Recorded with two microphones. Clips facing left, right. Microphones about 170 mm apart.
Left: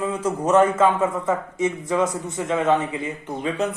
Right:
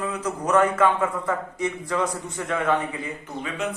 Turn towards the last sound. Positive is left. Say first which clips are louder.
# left 5 dB
turn(degrees=30)  # may be behind; listen again after turning